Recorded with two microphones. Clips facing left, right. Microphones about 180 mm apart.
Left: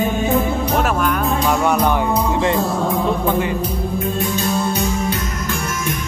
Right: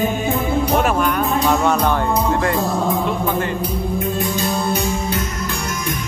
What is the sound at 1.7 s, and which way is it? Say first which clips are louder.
Music: left 1 dB; 15° left (ahead or behind).